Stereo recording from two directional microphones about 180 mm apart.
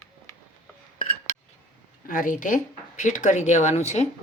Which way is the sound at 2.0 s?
50° left (ahead or behind).